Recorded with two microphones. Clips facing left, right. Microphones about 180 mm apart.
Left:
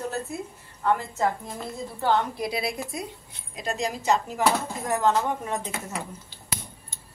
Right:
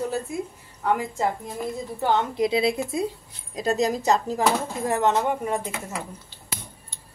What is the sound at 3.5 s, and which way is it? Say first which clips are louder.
Speech: right 6 dB; 35° right (ahead or behind).